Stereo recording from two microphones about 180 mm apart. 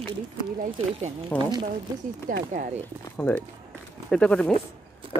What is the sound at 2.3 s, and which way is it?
Speech, 50° right (ahead or behind).